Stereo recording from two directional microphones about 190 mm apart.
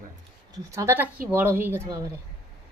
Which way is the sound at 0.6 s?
15° right (ahead or behind).